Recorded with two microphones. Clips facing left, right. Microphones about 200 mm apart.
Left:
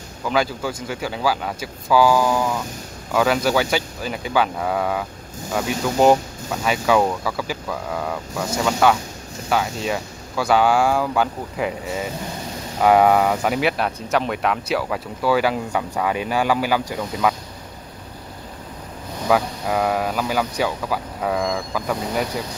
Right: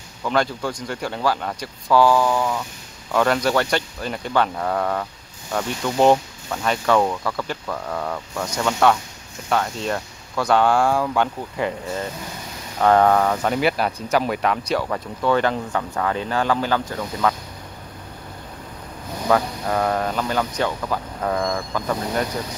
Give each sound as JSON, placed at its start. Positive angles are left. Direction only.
{"t": 0.2, "sound": "speech", "side_deg": 5}
{"t": 19.2, "sound": "speech", "side_deg": 5}